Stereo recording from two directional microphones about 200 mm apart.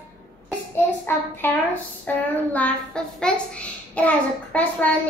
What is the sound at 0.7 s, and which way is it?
A child's voice, 10° left (ahead or behind).